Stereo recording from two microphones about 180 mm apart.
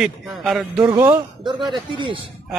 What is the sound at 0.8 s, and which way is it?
A man's voice, 15° right (ahead or behind).